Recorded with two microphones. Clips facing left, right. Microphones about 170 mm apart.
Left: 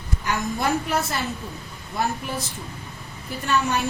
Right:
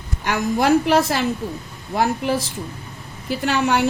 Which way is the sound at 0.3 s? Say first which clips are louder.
Right 7 dB; 85° right.